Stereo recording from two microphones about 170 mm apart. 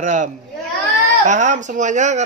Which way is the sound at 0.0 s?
45° right (ahead or behind).